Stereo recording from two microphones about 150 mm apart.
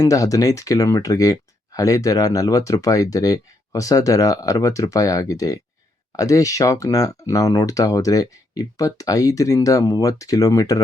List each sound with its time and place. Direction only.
0.0 s speech: 20° left (ahead or behind)